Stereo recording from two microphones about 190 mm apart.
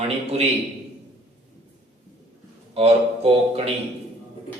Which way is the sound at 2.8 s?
30° right (ahead or behind).